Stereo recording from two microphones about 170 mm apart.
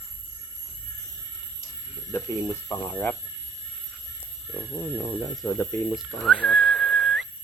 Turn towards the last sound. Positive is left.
turn(degrees=-5)  # may be behind; listen again after turning